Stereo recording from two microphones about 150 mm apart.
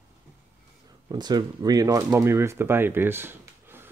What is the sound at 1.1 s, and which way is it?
Speech, 30° right (ahead or behind).